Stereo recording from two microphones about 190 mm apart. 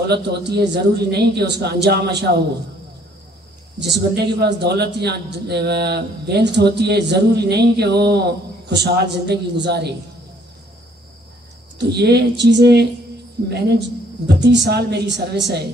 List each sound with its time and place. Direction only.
0.1 s a man's voice: 60° right (ahead or behind)
3.8 s a man's voice: 60° right (ahead or behind)
11.8 s a man's voice: 60° right (ahead or behind)